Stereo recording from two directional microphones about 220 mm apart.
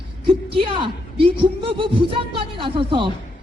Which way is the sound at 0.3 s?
25° right (ahead or behind).